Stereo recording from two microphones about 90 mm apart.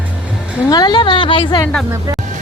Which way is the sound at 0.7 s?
50° left (ahead or behind).